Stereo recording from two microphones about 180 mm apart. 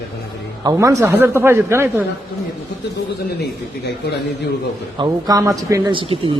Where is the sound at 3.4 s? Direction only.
70° left (ahead or behind).